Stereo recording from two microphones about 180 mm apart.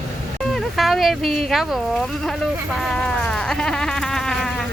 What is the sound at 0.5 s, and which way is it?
Speech, centre (ahead or behind).